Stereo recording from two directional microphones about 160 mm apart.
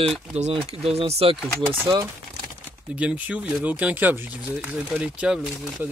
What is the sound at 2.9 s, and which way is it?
Speech, 10° right (ahead or behind).